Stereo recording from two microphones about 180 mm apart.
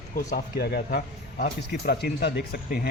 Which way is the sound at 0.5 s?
60° left (ahead or behind).